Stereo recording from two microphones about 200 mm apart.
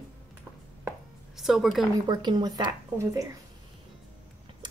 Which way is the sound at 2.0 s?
20° right (ahead or behind).